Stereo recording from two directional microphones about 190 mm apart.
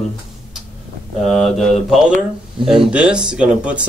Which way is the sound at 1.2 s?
Centre (ahead or behind).